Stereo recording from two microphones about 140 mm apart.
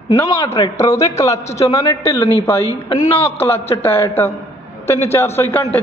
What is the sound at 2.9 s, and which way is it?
Speech, 45° left (ahead or behind).